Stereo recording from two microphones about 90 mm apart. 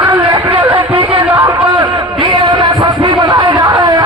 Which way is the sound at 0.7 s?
80° right.